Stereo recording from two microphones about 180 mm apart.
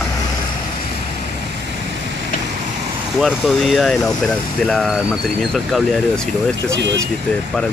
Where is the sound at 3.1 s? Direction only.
Centre (ahead or behind).